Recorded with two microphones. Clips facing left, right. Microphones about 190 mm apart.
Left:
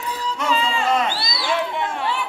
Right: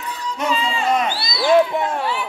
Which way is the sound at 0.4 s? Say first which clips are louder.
Right 1 dB; 20° right (ahead or behind).